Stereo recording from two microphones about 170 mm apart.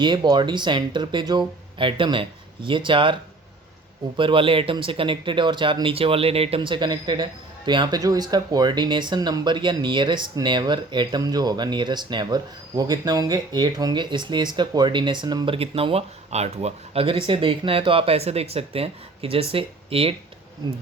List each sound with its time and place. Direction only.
0.0 s speech: 25° right (ahead or behind)
4.2 s speech: 30° right (ahead or behind)